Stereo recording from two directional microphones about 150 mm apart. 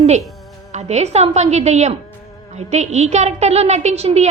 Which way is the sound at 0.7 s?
45° right (ahead or behind).